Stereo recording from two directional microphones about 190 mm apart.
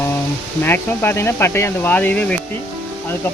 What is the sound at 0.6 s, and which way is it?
Speech, 10° left (ahead or behind).